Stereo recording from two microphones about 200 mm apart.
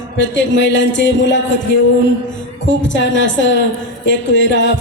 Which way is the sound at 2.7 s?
65° left (ahead or behind).